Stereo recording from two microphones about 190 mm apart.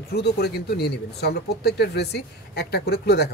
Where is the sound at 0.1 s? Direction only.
55° left (ahead or behind).